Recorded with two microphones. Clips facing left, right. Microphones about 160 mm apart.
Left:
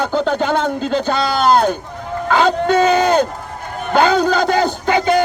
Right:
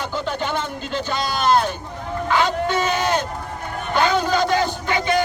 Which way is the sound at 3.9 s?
40° left (ahead or behind).